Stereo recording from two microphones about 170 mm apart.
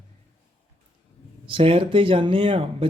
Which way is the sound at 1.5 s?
35° right (ahead or behind).